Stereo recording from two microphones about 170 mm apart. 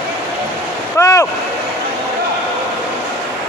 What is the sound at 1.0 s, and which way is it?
Boat, 20° left (ahead or behind).